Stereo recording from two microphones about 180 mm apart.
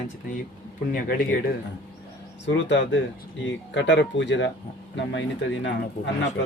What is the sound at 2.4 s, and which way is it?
Speech, 80° left.